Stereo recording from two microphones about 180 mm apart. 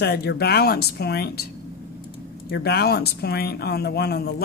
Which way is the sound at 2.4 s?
60° left (ahead or behind).